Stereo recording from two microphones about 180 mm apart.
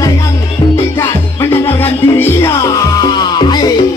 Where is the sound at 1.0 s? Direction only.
10° left (ahead or behind).